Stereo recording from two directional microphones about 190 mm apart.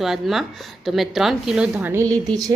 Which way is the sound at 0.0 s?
Centre (ahead or behind).